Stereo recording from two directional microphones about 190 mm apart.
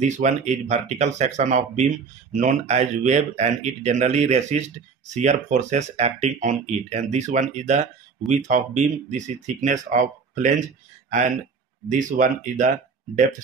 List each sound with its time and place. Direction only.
0.0 s speech: 40° right (ahead or behind)